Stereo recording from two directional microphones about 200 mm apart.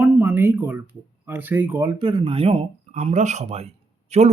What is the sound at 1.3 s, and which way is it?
Speech, 10° right (ahead or behind).